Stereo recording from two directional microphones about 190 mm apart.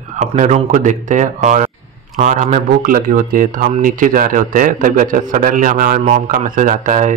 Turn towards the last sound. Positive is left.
turn(degrees=-40)  # may be behind; listen again after turning